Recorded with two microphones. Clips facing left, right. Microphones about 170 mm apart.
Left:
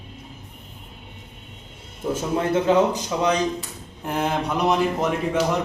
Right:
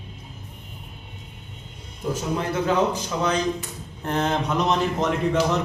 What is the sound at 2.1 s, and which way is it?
Speech, 25° left (ahead or behind).